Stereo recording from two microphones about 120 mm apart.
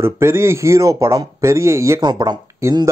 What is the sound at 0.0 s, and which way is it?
Speech, 20° right (ahead or behind).